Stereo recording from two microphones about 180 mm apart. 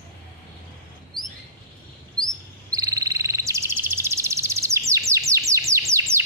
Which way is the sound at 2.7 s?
20° right (ahead or behind).